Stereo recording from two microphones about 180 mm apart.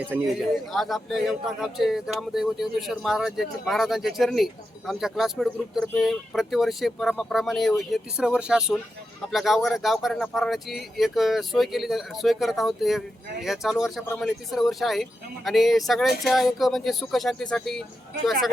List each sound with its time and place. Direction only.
0.1 s speech: centre (ahead or behind)